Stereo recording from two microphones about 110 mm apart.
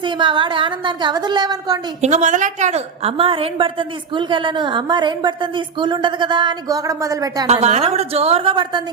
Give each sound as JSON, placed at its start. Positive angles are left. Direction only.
{"t": 0.0, "sound": "a woman's voice", "side_deg": -45}
{"t": 2.0, "sound": "a woman's voice", "side_deg": -90}
{"t": 7.4, "sound": "a woman's voice", "side_deg": -75}